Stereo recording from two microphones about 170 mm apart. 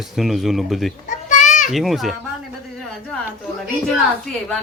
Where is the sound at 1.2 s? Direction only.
45° left (ahead or behind).